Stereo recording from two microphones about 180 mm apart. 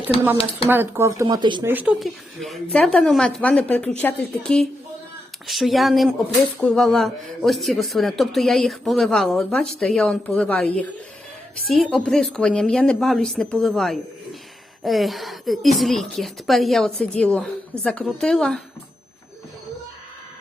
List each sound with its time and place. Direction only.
0.7 s speech: 10° right (ahead or behind)
1.6 s speech: 10° right (ahead or behind); by 10.7 s 5° left (ahead or behind)
11.7 s speech: centre (ahead or behind)